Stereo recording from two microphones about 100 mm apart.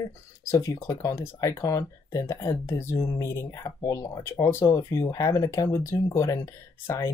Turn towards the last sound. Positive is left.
turn(degrees=30)  # may be behind; listen again after turning